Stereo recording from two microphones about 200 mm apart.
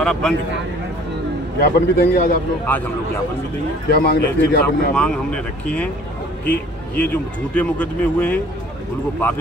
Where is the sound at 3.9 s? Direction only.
50° left (ahead or behind).